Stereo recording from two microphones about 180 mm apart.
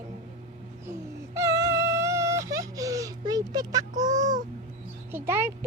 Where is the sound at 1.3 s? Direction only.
15° right (ahead or behind).